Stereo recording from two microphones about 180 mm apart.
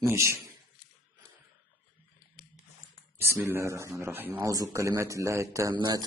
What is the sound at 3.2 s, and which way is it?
Speech, 10° right (ahead or behind).